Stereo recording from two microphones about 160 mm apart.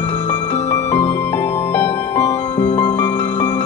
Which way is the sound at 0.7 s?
15° left (ahead or behind).